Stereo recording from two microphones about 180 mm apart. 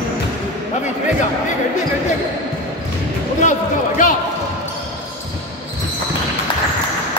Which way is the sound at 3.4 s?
45° left (ahead or behind).